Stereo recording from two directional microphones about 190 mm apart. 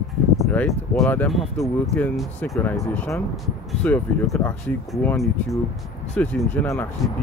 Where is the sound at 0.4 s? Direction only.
5° left (ahead or behind).